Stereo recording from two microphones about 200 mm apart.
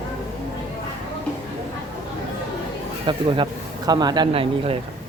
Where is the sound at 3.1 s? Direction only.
25° right (ahead or behind).